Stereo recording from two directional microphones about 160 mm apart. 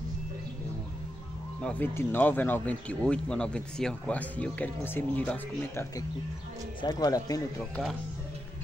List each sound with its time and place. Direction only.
1.6 s speech: 10° left (ahead or behind)
6.8 s speech: 25° left (ahead or behind)
7.7 s speech: 5° left (ahead or behind)